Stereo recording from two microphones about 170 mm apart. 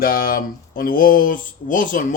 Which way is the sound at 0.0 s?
60° left (ahead or behind).